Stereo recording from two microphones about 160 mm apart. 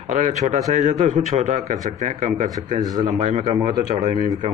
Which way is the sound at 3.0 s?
45° right (ahead or behind).